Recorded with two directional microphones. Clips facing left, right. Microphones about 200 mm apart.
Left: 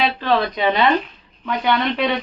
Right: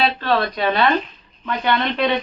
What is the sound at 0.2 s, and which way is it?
A woman's voice, 15° left (ahead or behind).